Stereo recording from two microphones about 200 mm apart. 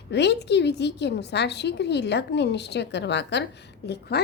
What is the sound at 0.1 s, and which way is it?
A woman's voice, 55° left (ahead or behind).